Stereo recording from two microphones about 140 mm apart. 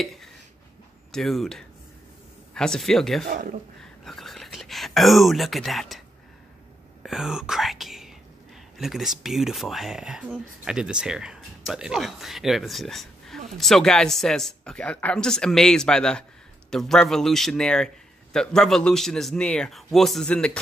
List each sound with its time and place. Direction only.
0.0 s a sound: centre (ahead or behind)
1.1 s speech: centre (ahead or behind)
3.3 s speech: 75° right (ahead or behind)
4.0 s whispering: centre (ahead or behind)
8.7 s speech: centre (ahead or behind)